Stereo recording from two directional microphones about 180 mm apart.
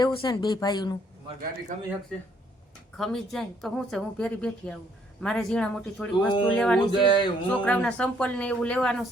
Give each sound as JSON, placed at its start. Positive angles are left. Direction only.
{"t": 0.0, "sound": "a woman's voice", "side_deg": 25}
{"t": 2.1, "sound": "a woman's voice", "side_deg": 5}
{"t": 6.9, "sound": "a woman's voice", "side_deg": 25}
{"t": 7.5, "sound": "speech", "side_deg": 10}